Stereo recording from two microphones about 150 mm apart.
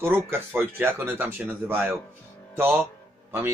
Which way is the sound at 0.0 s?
15° right (ahead or behind).